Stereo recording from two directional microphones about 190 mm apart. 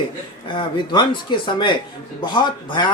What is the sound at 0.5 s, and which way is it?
Speech, 25° left (ahead or behind).